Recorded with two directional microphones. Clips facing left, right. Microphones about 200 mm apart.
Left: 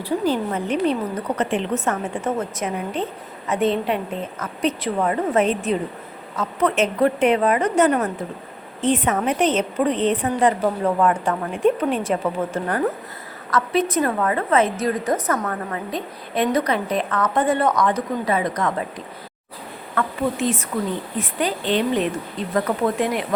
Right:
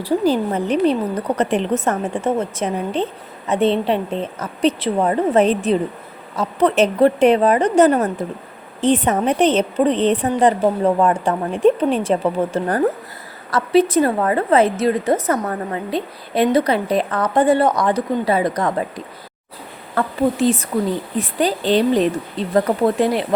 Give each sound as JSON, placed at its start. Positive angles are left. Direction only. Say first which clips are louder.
{"t": 0.0, "sound": "a woman's voice", "louder": "right 4 dB", "side_deg": -35}